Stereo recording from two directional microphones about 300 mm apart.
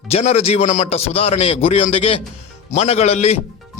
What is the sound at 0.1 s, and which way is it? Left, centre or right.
A man's voice, centre.